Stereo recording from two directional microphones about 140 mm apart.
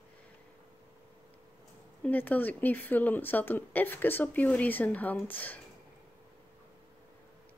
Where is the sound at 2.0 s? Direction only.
10° left (ahead or behind).